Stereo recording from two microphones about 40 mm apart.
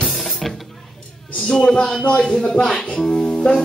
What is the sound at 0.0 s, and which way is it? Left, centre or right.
Music, centre.